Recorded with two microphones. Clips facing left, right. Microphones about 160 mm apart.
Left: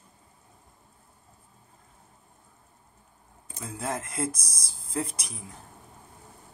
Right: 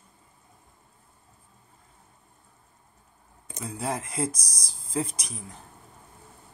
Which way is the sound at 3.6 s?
Centre (ahead or behind).